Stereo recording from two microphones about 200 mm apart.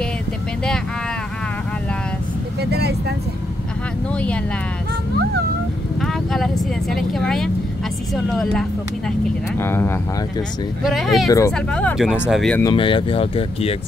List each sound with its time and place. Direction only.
2.6 s vehicle: 55° right (ahead or behind)
5.9 s speech: centre (ahead or behind)
9.6 s speech: 10° left (ahead or behind)
10.8 s speech: centre (ahead or behind)
11.2 s speech: 15° left (ahead or behind)
11.5 s speech: 5° left (ahead or behind)
12.6 s speech: 25° left (ahead or behind)